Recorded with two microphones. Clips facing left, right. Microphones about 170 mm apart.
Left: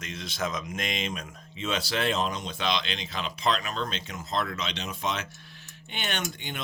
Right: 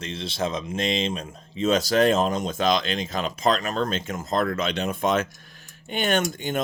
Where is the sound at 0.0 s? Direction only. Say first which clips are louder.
Right 5 dB; 30° right (ahead or behind).